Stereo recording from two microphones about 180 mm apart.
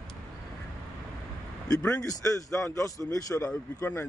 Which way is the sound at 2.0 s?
20° left (ahead or behind).